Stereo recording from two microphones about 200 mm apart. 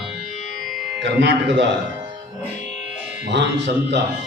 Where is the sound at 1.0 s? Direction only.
60° right (ahead or behind).